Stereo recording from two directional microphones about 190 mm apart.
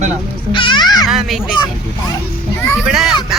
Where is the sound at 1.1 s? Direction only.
Centre (ahead or behind).